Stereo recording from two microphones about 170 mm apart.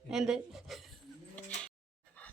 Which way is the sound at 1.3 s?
5° left (ahead or behind).